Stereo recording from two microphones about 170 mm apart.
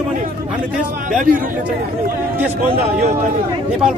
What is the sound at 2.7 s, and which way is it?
Speech, 60° right (ahead or behind).